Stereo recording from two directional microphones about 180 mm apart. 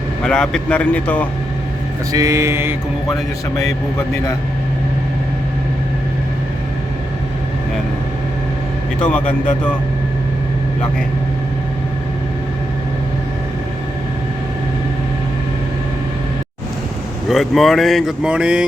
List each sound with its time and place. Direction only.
0.2 s a man's voice: 5° left (ahead or behind)
2.1 s mantra: 15° right (ahead or behind)
9.0 s a man's voice: 5° left (ahead or behind)
17.2 s speech: centre (ahead or behind)